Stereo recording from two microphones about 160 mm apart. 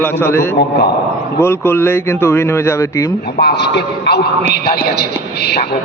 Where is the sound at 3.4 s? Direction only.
90° left.